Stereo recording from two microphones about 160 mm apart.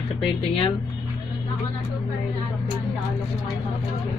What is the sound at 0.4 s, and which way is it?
Speech, 35° left (ahead or behind).